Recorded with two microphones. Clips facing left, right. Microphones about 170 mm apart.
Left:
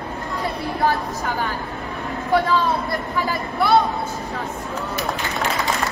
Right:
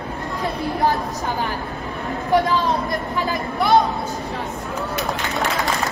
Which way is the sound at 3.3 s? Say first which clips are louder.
Right 1 dB; 20° right (ahead or behind).